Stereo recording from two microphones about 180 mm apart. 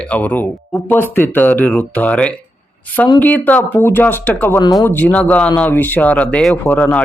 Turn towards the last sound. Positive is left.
turn(degrees=10)  # may be behind; listen again after turning